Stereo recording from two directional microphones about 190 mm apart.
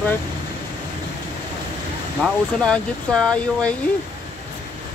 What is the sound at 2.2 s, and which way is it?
Speech, 5° left (ahead or behind).